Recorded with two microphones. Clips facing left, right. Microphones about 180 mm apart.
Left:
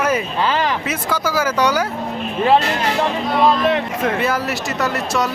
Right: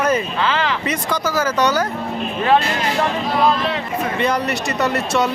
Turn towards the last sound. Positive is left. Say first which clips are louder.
# right 2 dB
turn(degrees=0)  # may be behind; listen again after turning